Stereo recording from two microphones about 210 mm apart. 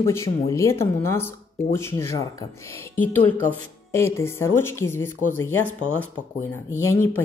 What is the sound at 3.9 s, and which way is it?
Speech, 10° left (ahead or behind).